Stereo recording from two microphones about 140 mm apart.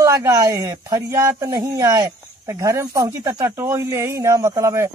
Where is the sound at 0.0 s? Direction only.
20° right (ahead or behind).